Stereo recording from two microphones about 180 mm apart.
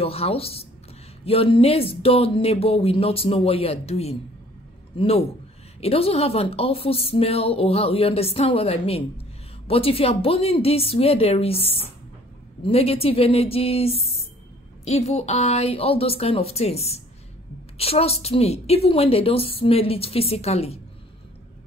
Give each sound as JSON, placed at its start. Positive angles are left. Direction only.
{"t": 0.0, "sound": "a woman's voice", "side_deg": 35}